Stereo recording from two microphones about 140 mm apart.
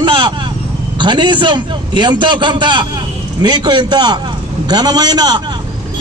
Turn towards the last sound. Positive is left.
turn(degrees=-30)  # may be behind; listen again after turning